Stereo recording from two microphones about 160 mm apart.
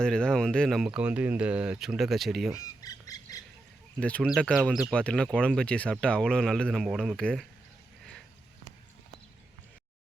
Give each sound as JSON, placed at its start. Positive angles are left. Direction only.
{"t": 0.0, "sound": "speech", "side_deg": 5}
{"t": 2.8, "sound": "squawk", "side_deg": 25}
{"t": 4.0, "sound": "speech", "side_deg": 5}